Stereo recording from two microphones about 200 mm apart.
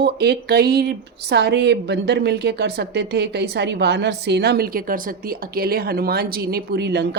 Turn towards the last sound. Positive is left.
turn(degrees=-60)  # may be behind; listen again after turning